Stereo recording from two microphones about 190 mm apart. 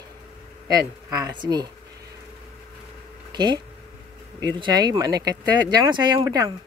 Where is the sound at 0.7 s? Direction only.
20° right (ahead or behind).